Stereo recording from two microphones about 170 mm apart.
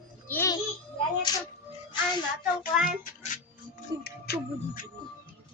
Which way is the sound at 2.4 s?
5° right (ahead or behind).